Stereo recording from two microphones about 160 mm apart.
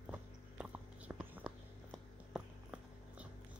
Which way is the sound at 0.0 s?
10° right (ahead or behind).